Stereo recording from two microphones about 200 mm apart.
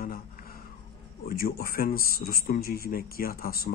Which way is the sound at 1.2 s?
45° left (ahead or behind).